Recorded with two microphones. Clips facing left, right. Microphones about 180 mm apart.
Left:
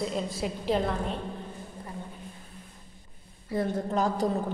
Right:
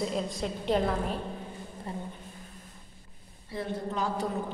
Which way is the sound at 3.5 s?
45° left (ahead or behind).